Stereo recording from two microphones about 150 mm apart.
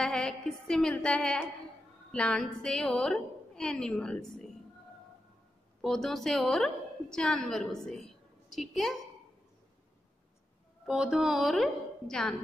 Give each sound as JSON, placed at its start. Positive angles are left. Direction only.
{"t": 0.0, "sound": "a woman's voice", "side_deg": 5}
{"t": 5.8, "sound": "a woman's voice", "side_deg": 5}
{"t": 10.9, "sound": "a woman's voice", "side_deg": -5}